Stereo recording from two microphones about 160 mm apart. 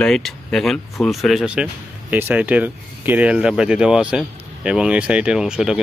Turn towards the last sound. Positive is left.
turn(degrees=-5)  # may be behind; listen again after turning